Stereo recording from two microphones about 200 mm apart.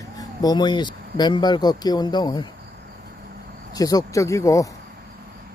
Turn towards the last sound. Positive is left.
turn(degrees=15)  # may be behind; listen again after turning